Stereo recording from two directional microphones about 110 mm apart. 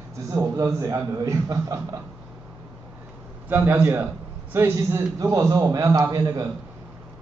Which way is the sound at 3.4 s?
20° right (ahead or behind).